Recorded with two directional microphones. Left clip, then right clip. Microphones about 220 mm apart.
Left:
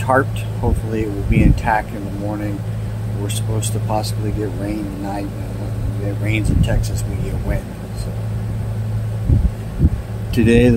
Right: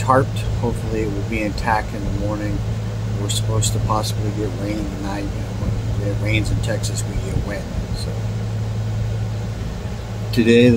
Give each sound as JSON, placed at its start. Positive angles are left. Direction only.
{"t": 0.1, "sound": "speech", "side_deg": -5}
{"t": 3.6, "sound": "speech", "side_deg": -5}
{"t": 6.2, "sound": "speech", "side_deg": -5}
{"t": 10.3, "sound": "speech", "side_deg": -5}